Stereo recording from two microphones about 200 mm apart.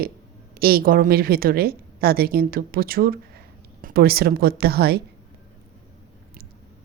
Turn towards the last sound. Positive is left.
turn(degrees=-50)  # may be behind; listen again after turning